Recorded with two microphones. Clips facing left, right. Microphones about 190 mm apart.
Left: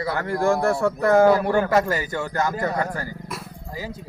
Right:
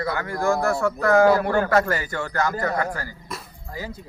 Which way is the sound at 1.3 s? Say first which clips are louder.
Left 1 dB; 15° left (ahead or behind).